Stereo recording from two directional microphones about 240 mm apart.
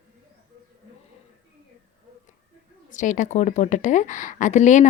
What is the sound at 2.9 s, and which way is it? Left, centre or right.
A woman's voice, left.